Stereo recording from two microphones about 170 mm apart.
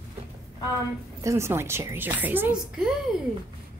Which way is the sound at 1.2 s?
15° right (ahead or behind).